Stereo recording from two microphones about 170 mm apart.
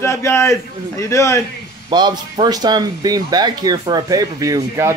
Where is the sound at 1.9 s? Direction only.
25° right (ahead or behind).